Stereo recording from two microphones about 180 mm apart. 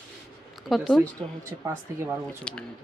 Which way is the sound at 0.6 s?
Centre (ahead or behind).